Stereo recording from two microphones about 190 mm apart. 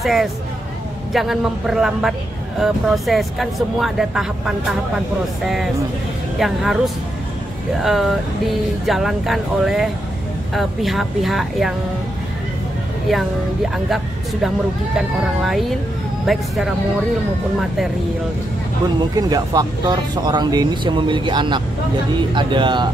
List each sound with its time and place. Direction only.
0.0 s speech: centre (ahead or behind)
13.8 s speech: centre (ahead or behind)
19.1 s speech: 20° right (ahead or behind)